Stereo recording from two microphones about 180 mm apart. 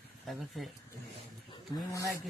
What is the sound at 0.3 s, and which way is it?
Speech, centre (ahead or behind).